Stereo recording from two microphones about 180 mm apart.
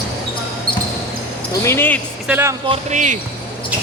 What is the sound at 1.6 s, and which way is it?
Speech, 10° left (ahead or behind).